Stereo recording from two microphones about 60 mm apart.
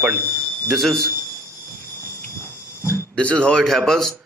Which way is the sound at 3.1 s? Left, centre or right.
Centre.